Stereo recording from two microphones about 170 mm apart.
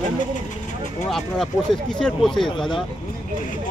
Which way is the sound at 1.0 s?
Centre (ahead or behind).